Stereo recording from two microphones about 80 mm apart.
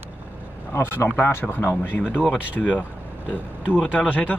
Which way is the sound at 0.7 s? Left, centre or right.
Left.